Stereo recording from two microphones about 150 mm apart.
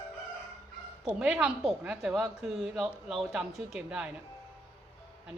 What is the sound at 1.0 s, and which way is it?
A woman's voice, 5° right (ahead or behind).